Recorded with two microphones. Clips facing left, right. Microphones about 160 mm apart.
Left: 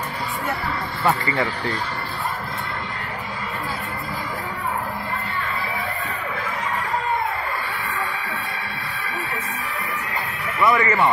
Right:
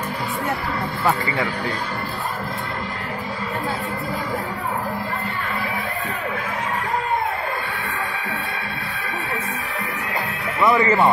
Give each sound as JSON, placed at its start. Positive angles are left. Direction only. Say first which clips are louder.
{"t": 1.0, "sound": "speech", "louder": "left 1 dB", "side_deg": -10}
{"t": 10.6, "sound": "speech", "louder": "right 2 dB", "side_deg": -20}